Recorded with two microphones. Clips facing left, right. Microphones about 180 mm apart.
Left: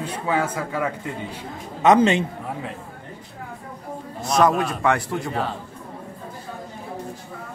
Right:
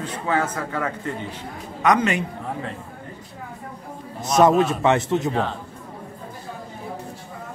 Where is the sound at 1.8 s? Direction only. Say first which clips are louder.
Left 4 dB; 25° left (ahead or behind).